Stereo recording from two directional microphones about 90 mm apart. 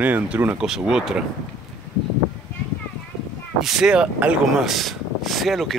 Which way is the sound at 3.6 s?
5° right (ahead or behind).